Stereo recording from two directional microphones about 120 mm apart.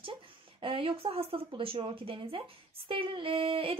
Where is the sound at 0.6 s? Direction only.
50° right (ahead or behind).